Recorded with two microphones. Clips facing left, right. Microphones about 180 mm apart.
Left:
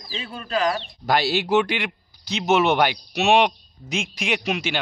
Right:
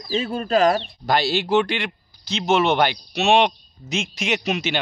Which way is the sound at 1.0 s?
10° left (ahead or behind).